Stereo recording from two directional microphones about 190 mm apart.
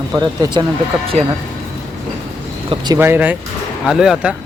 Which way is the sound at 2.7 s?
20° right (ahead or behind).